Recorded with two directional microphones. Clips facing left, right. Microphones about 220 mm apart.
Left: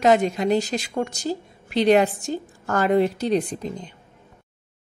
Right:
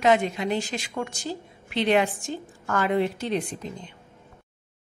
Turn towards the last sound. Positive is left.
turn(degrees=40)  # may be behind; listen again after turning